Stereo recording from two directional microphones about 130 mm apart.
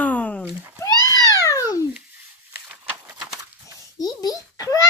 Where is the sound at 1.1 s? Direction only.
30° left (ahead or behind).